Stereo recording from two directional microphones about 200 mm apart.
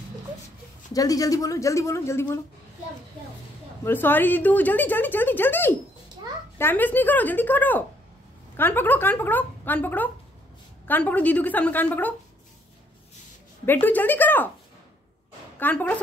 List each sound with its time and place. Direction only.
0.9 s speech: 15° left (ahead or behind)
3.8 s speech: 10° left (ahead or behind)
13.7 s speech: 10° left (ahead or behind)
15.6 s speech: 10° left (ahead or behind)